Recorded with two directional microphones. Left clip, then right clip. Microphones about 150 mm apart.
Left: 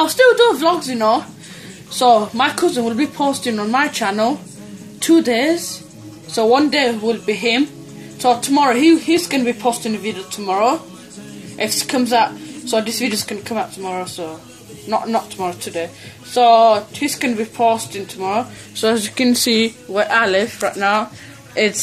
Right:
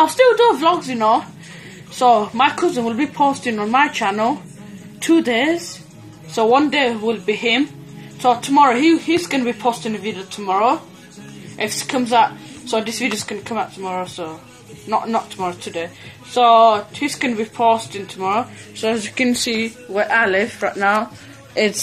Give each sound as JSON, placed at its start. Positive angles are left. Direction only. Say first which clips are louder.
{"t": 0.0, "sound": "a woman's voice", "louder": "left 1 dB", "side_deg": 10}
{"t": 2.0, "sound": "a woman's voice", "louder": "left 1 dB", "side_deg": 25}
{"t": 19.9, "sound": "speech", "louder": "even", "side_deg": 25}
{"t": 20.6, "sound": "a woman's voice", "louder": "even", "side_deg": 10}